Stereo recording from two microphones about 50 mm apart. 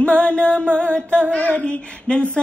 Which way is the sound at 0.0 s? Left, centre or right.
Left.